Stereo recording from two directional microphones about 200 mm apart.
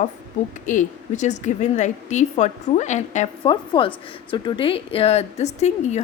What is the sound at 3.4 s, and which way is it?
A woman's voice, 25° left (ahead or behind).